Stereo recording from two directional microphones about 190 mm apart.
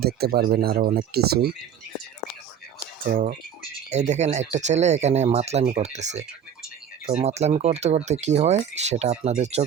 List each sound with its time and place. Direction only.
0.0 s speech: 55° right (ahead or behind)
3.8 s speech: 40° right (ahead or behind)